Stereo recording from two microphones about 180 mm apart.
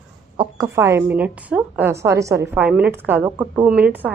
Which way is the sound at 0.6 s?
15° right (ahead or behind).